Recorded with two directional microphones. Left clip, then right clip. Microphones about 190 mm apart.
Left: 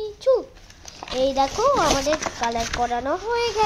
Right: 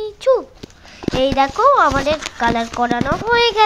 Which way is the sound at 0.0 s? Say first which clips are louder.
Right 4 dB; 10° right (ahead or behind).